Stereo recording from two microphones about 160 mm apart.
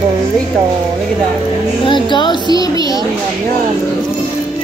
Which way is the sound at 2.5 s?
25° left (ahead or behind).